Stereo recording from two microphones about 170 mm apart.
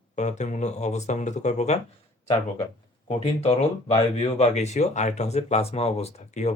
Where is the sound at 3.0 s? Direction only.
35° left (ahead or behind).